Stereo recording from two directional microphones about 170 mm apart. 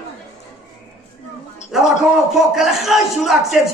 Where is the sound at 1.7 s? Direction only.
5° right (ahead or behind).